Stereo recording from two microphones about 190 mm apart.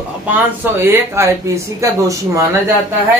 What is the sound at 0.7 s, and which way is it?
Speech, 10° right (ahead or behind).